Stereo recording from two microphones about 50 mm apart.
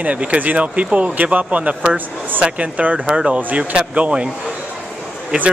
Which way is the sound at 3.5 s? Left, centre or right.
Right.